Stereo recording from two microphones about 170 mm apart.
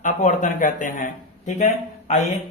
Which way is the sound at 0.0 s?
45° left (ahead or behind).